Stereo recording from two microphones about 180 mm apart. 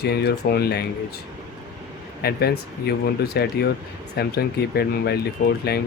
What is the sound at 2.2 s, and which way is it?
Speech, 60° left (ahead or behind).